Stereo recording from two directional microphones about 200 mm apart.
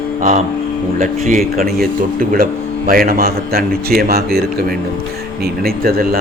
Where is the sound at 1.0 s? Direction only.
45° right (ahead or behind).